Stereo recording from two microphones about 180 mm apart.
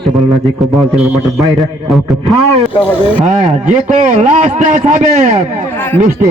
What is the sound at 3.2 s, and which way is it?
A man's voice, 40° right (ahead or behind).